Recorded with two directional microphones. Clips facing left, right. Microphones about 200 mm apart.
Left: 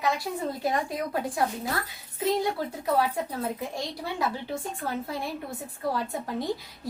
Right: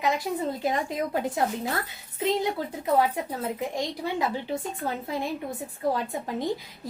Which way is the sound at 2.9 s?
20° right (ahead or behind).